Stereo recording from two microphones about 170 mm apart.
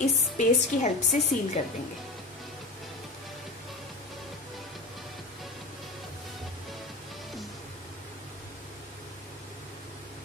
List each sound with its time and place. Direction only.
0.0 s a woman's voice: 45° left (ahead or behind)